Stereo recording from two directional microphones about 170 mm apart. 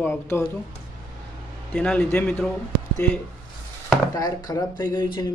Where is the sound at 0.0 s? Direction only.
15° left (ahead or behind).